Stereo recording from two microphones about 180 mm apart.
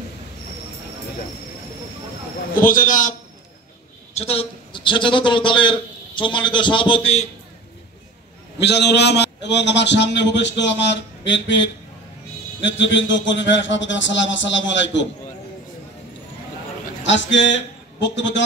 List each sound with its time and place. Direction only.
2.5 s a man's voice: 50° left (ahead or behind)
4.1 s a man's voice: 35° left (ahead or behind)
8.5 s a man's voice: 70° left (ahead or behind)
12.7 s speech: 85° left
17.0 s a man's voice: 90° left